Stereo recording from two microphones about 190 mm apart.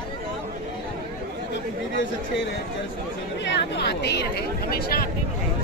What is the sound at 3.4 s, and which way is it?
Chatter, 65° left (ahead or behind).